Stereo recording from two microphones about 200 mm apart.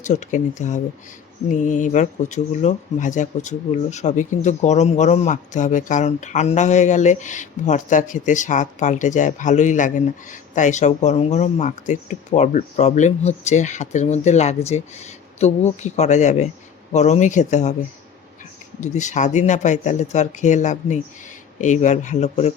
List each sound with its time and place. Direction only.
0.0 s speech: 35° left (ahead or behind)
18.8 s speech: 35° left (ahead or behind)